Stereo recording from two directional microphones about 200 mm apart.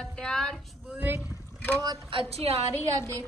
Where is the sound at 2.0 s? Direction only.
30° right (ahead or behind).